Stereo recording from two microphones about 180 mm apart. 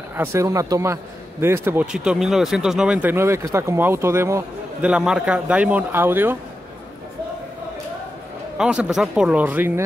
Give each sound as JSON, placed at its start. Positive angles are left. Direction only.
{"t": 0.1, "sound": "speech", "side_deg": -15}
{"t": 8.5, "sound": "speech", "side_deg": -5}